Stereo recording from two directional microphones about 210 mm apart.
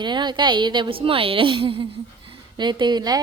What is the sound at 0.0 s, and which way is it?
A woman's voice, 20° right (ahead or behind).